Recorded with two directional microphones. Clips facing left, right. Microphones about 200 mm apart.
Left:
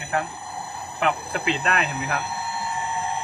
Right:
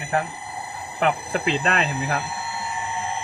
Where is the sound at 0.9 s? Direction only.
40° right (ahead or behind).